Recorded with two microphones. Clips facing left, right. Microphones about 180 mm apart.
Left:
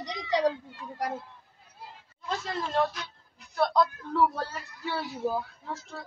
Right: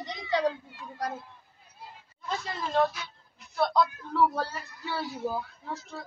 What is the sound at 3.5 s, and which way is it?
Speech, centre (ahead or behind).